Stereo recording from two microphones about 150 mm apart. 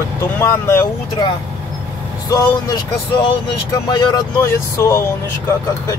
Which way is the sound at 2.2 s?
25° left (ahead or behind).